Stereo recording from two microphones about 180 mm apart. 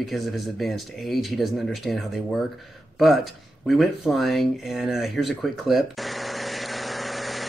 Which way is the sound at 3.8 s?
Centre (ahead or behind).